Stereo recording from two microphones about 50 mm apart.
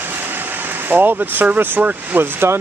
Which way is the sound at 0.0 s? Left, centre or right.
Right.